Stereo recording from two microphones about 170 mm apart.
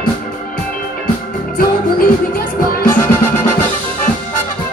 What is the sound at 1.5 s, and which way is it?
Music, 60° left (ahead or behind).